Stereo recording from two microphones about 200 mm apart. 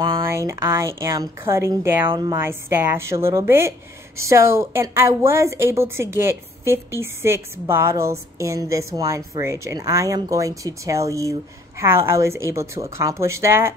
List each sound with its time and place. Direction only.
0.2 s a woman's voice: 15° right (ahead or behind)